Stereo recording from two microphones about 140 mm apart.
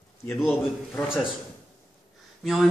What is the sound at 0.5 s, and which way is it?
Speech, 15° left (ahead or behind).